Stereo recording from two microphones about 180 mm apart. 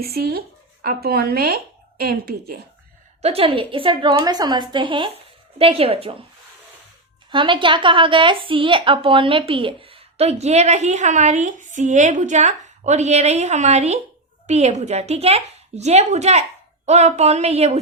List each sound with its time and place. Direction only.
0.0 s speech: 60° right (ahead or behind)
3.2 s a woman's voice: 35° right (ahead or behind)
7.3 s a woman's voice: 25° right (ahead or behind)